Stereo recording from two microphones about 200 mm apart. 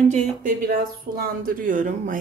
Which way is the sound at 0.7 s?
50° right (ahead or behind).